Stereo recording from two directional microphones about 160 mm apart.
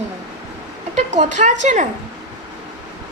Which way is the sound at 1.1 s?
50° right (ahead or behind).